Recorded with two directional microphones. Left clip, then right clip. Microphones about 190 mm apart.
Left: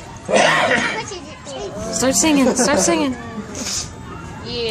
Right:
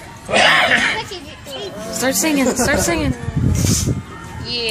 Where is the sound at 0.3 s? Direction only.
50° left (ahead or behind).